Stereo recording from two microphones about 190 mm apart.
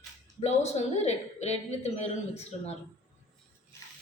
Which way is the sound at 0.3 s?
35° left (ahead or behind).